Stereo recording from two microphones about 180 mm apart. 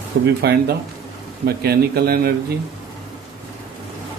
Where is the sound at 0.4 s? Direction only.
65° right (ahead or behind).